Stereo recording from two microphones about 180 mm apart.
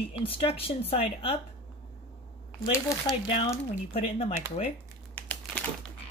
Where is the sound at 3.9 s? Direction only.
30° left (ahead or behind).